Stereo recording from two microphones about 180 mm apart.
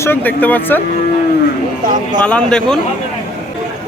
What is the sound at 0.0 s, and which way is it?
Speech, 10° left (ahead or behind).